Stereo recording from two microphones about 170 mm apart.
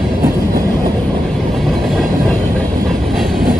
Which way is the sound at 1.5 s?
Centre (ahead or behind).